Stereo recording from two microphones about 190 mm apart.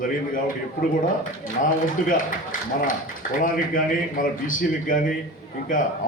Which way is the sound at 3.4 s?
45° left (ahead or behind).